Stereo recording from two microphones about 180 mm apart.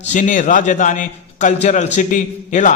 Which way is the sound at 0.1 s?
45° left (ahead or behind).